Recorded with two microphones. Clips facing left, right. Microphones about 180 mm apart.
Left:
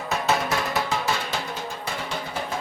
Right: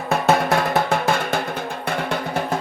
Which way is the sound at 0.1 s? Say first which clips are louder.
Right 7 dB; 55° right (ahead or behind).